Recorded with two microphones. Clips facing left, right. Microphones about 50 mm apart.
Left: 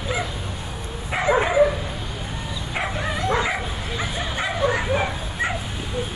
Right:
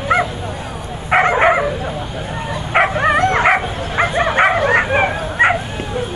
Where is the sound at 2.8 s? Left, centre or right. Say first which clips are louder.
Right 13 dB; right.